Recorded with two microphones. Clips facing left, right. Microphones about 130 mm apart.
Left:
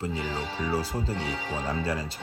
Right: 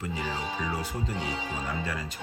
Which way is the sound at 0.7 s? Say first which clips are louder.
Left 4 dB; 30° left (ahead or behind).